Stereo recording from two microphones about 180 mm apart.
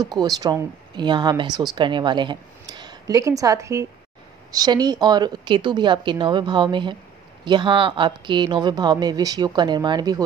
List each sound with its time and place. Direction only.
0.0 s speech: 25° right (ahead or behind)